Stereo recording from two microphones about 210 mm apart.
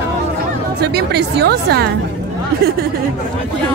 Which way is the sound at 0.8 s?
50° right (ahead or behind).